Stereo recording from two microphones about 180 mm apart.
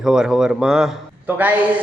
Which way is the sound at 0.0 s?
5° right (ahead or behind).